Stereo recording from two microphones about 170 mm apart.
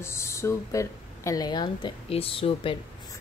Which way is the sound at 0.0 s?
15° left (ahead or behind).